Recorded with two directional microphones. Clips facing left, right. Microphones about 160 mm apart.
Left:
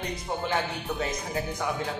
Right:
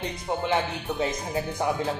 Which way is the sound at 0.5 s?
25° right (ahead or behind).